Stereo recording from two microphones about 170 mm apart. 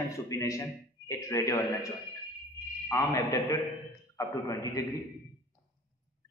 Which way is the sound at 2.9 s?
15° left (ahead or behind).